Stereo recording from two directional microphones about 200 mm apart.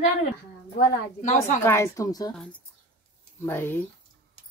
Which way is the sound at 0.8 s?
40° left (ahead or behind).